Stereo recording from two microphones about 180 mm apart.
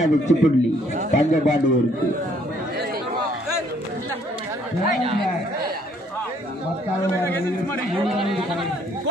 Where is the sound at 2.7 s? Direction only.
60° right (ahead or behind).